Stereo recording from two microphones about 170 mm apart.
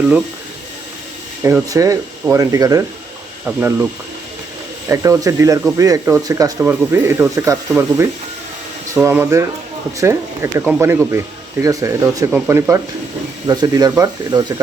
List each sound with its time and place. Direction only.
1.4 s speech: 15° right (ahead or behind)
4.9 s speech: 15° right (ahead or behind)
9.0 s speech: 15° right (ahead or behind)